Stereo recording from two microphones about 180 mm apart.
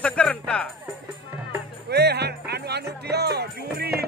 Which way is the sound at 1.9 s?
65° right (ahead or behind).